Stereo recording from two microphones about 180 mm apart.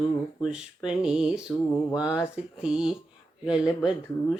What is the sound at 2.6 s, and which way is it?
Mantra, 5° right (ahead or behind).